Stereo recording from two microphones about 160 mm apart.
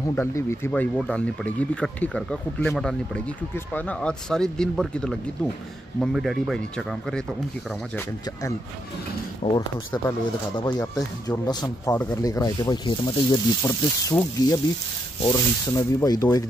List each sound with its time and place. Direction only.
0.0 s speech: 15° left (ahead or behind)
9.4 s speech: 40° left (ahead or behind)
10.6 s speech: 25° left (ahead or behind)